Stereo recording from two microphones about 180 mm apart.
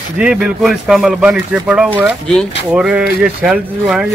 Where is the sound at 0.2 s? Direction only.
5° right (ahead or behind).